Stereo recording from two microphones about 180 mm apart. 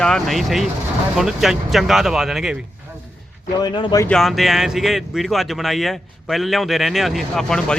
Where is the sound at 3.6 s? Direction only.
25° left (ahead or behind).